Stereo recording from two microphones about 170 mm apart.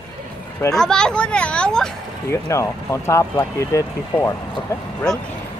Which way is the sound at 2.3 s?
15° left (ahead or behind).